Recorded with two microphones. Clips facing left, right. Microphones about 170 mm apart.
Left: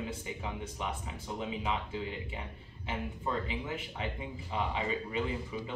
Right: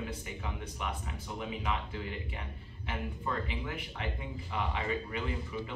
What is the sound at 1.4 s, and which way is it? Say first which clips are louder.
Speech: left 1 dB; 25° left (ahead or behind).